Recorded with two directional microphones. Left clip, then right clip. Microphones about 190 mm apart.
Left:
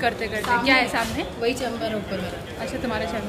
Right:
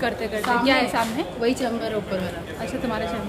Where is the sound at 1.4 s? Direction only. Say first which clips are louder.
Right 1 dB; 55° right (ahead or behind).